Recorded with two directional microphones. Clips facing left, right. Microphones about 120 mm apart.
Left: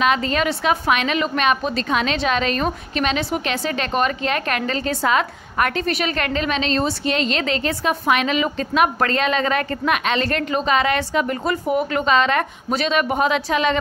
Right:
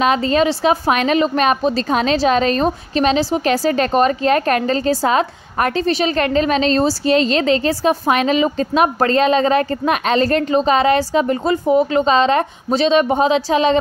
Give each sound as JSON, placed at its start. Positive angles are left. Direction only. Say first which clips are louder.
{"t": 0.0, "sound": "a woman's voice", "louder": "right 4 dB", "side_deg": -35}